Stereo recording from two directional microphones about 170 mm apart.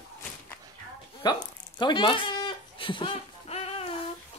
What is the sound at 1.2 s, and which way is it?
Speech, 25° left (ahead or behind).